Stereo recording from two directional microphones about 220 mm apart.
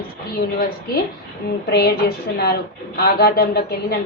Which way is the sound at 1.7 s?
45° left (ahead or behind).